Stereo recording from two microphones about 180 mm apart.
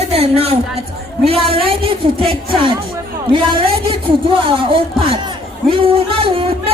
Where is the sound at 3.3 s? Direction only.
30° right (ahead or behind).